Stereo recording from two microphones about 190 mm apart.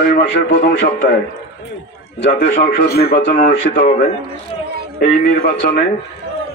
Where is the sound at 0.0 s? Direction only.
45° left (ahead or behind).